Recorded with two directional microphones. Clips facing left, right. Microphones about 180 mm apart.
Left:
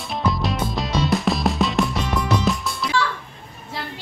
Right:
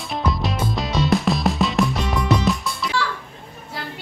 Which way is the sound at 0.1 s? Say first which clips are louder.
Left 1 dB; centre (ahead or behind).